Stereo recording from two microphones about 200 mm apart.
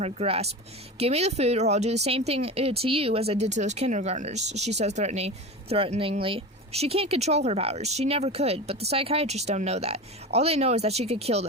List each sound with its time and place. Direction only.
0.0 s speech: 30° right (ahead or behind)